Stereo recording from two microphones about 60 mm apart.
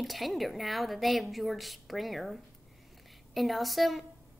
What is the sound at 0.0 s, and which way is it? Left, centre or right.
A woman's voice, centre.